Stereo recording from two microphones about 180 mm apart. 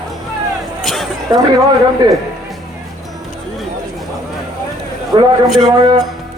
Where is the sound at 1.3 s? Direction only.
20° right (ahead or behind).